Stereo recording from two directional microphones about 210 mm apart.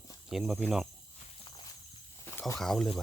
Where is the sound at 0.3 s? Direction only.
Centre (ahead or behind).